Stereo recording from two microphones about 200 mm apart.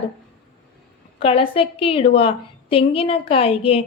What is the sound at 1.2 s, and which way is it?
A woman's voice, 30° left (ahead or behind).